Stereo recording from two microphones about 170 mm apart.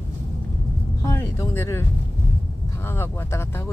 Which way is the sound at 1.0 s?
15° left (ahead or behind).